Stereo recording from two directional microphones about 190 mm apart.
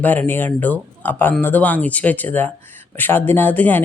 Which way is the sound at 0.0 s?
10° left (ahead or behind).